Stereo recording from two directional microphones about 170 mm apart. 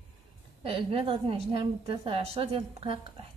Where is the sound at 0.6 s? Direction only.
35° right (ahead or behind).